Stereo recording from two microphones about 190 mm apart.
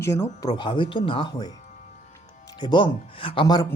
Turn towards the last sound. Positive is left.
turn(degrees=25)  # may be behind; listen again after turning